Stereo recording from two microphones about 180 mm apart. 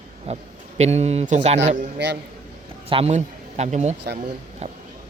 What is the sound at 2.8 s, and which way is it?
Speech, 35° right (ahead or behind).